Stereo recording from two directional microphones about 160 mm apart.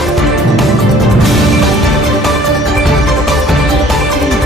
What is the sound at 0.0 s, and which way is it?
Music, centre (ahead or behind).